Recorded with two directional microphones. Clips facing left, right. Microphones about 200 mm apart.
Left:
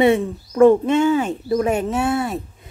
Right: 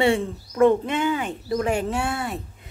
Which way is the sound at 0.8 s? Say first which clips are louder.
Left 7 dB; 25° left (ahead or behind).